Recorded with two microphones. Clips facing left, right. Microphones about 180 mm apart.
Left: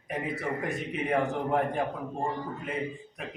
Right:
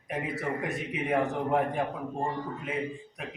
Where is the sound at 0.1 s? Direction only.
Centre (ahead or behind).